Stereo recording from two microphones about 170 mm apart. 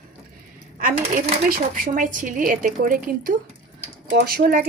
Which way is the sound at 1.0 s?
40° right (ahead or behind).